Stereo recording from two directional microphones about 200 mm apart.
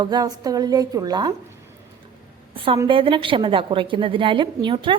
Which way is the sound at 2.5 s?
25° right (ahead or behind).